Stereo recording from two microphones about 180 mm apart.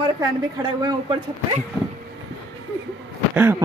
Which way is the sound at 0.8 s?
25° right (ahead or behind).